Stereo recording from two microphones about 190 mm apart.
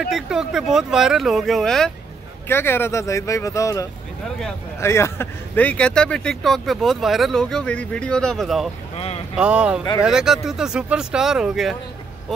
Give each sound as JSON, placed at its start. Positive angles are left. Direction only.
{"t": 0.1, "sound": "speech", "side_deg": -5}
{"t": 8.9, "sound": "boat", "side_deg": 30}
{"t": 9.4, "sound": "speech", "side_deg": -5}